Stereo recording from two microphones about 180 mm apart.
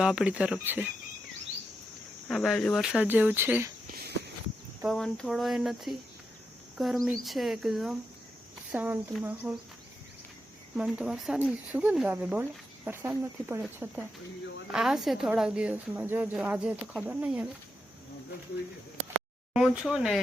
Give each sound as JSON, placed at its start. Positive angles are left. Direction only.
{"t": 0.0, "sound": "a woman's voice", "side_deg": -5}
{"t": 2.2, "sound": "a woman's voice", "side_deg": 0}
{"t": 3.8, "sound": "a sound", "side_deg": -55}
{"t": 4.9, "sound": "a woman's voice", "side_deg": 0}
{"t": 10.8, "sound": "a woman's voice", "side_deg": -5}
{"t": 19.5, "sound": "a woman's voice", "side_deg": 0}